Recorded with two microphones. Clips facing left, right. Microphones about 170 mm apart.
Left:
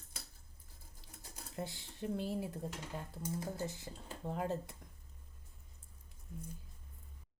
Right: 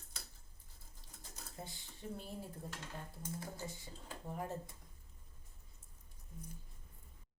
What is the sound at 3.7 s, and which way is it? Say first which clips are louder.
Speech: left 3 dB; 75° left (ahead or behind).